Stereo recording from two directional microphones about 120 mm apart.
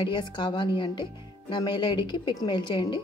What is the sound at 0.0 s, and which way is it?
A woman's voice, 40° left (ahead or behind).